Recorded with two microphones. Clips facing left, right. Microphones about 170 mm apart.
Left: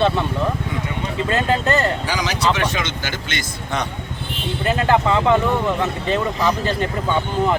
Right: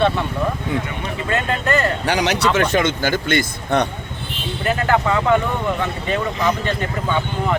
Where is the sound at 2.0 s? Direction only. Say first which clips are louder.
Right 3 dB; 65° right (ahead or behind).